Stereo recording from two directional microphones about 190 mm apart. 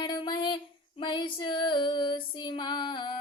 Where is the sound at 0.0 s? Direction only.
25° left (ahead or behind).